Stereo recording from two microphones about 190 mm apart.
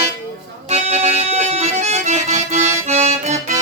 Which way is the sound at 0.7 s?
35° right (ahead or behind).